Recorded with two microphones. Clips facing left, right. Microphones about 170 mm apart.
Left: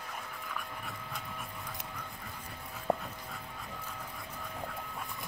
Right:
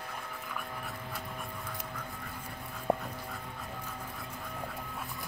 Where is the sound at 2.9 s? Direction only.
Centre (ahead or behind).